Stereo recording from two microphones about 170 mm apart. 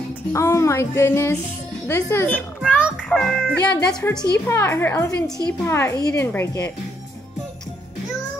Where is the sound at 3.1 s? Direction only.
5° left (ahead or behind).